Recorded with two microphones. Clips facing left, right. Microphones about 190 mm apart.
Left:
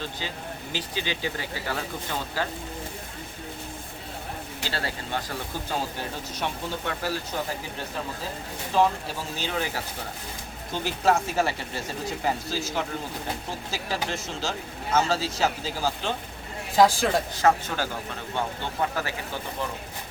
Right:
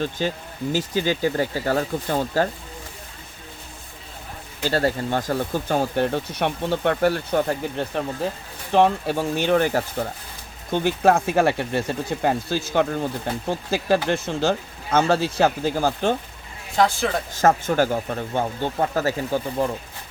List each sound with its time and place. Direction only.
0.0 s speech: 50° right (ahead or behind)
4.6 s speech: 45° right (ahead or behind)
16.7 s speech: centre (ahead or behind)
17.3 s speech: 50° right (ahead or behind)